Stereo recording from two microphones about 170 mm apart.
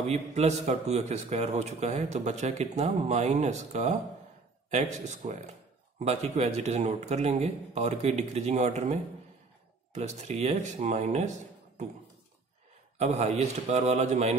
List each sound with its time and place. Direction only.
0.1 s speech: 40° right (ahead or behind)
9.9 s speech: 40° right (ahead or behind)
12.9 s speech: 40° right (ahead or behind)